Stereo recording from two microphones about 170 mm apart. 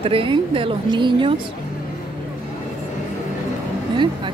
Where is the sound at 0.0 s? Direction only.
30° right (ahead or behind).